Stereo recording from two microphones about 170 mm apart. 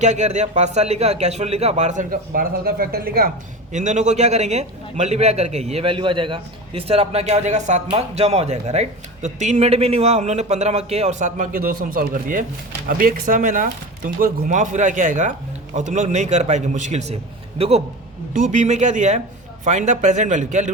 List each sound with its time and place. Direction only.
0.0 s speech: 45° right (ahead or behind)